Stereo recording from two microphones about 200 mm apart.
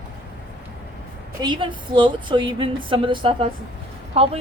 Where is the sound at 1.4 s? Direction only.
25° right (ahead or behind).